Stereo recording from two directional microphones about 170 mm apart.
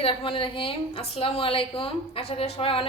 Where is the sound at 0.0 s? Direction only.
30° left (ahead or behind).